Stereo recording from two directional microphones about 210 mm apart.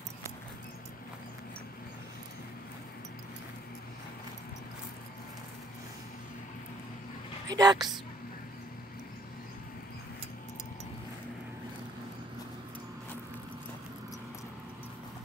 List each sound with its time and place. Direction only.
7.4 s speech: 20° right (ahead or behind)